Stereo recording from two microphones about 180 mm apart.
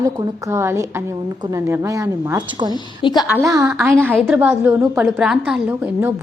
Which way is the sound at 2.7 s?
25° left (ahead or behind).